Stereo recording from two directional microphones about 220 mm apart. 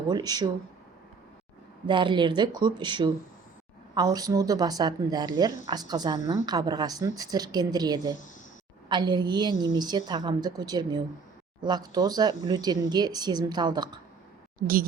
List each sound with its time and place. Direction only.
0.1 s a woman's voice: 20° right (ahead or behind)
1.9 s a woman's voice: 20° right (ahead or behind)